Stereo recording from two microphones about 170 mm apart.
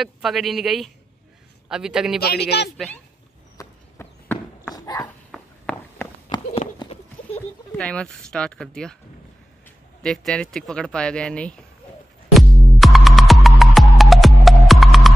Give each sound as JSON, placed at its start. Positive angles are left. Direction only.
{"t": 0.0, "sound": "speech", "side_deg": 0}
{"t": 2.1, "sound": "a man's voice", "side_deg": 70}
{"t": 3.5, "sound": "horse", "side_deg": 10}
{"t": 4.7, "sound": "dog", "side_deg": 20}
{"t": 5.3, "sound": "walk", "side_deg": 5}
{"t": 6.3, "sound": "horse", "side_deg": 25}
{"t": 7.3, "sound": "speech", "side_deg": 5}
{"t": 10.0, "sound": "speech", "side_deg": 0}
{"t": 12.4, "sound": "music", "side_deg": 0}